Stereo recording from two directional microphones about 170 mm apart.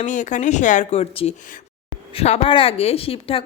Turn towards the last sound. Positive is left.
turn(degrees=35)  # may be behind; listen again after turning